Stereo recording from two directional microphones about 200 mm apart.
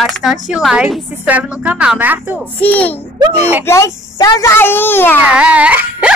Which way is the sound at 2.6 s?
5° left (ahead or behind).